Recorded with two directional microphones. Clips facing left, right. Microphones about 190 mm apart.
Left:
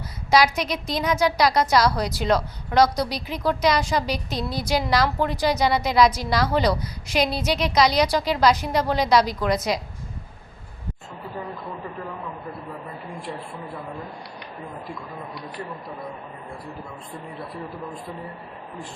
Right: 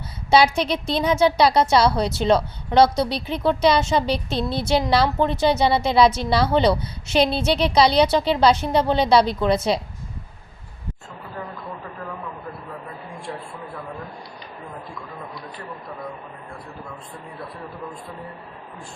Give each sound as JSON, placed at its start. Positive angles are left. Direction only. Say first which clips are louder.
{"t": 0.3, "sound": "a woman's voice", "louder": "right 3 dB", "side_deg": -30}